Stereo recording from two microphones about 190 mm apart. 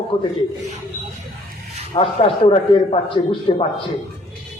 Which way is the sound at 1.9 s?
30° left (ahead or behind).